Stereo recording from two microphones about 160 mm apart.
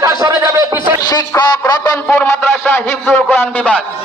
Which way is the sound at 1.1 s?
25° left (ahead or behind).